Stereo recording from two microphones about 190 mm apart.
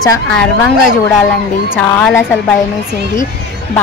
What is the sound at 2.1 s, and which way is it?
Speech, 15° left (ahead or behind).